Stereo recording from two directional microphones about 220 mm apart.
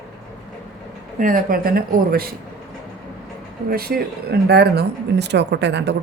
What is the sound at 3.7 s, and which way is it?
Speech, 45° right (ahead or behind).